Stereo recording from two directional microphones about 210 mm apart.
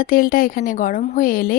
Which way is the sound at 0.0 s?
40° left (ahead or behind).